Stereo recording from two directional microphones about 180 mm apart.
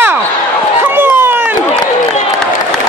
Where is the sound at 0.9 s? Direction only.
10° right (ahead or behind).